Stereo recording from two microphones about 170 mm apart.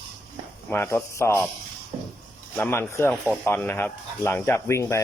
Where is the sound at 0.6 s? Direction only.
15° left (ahead or behind).